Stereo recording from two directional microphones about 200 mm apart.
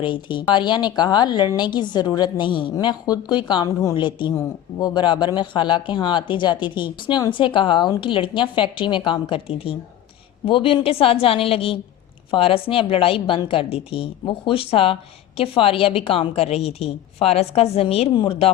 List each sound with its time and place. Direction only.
0.0 s a woman's voice: 25° left (ahead or behind)